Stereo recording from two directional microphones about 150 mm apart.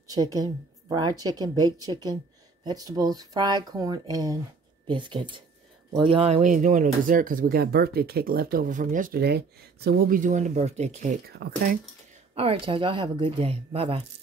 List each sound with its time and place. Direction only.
0.1 s a woman's voice: 25° right (ahead or behind); by 6.5 s 45° right (ahead or behind)
6.5 s speech: 60° right (ahead or behind)
11.2 s speech: 80° right
12.4 s speech: 35° right (ahead or behind)